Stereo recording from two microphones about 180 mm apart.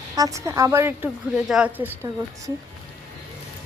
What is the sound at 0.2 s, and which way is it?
A woman's voice, 15° right (ahead or behind).